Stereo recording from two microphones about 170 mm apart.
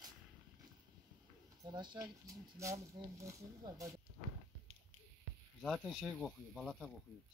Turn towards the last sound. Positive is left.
turn(degrees=0)  # may be behind; listen again after turning